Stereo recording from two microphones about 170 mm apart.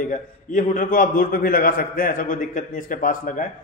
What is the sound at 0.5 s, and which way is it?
A man's voice, 50° left (ahead or behind).